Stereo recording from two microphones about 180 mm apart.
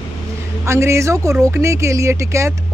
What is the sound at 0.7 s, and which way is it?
Speech, 15° right (ahead or behind).